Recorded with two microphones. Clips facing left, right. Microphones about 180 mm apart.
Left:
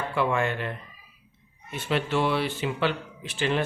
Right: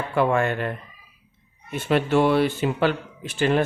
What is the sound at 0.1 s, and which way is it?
Speech, 45° right (ahead or behind).